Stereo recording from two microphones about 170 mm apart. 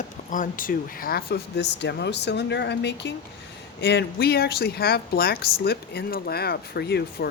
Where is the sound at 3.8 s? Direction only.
75° left (ahead or behind).